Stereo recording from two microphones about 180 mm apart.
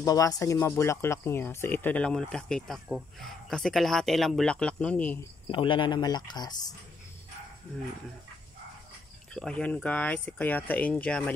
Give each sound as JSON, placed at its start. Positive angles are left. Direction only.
{"t": 0.0, "sound": "speech", "side_deg": 20}
{"t": 5.5, "sound": "speech", "side_deg": 25}
{"t": 9.3, "sound": "speech", "side_deg": 5}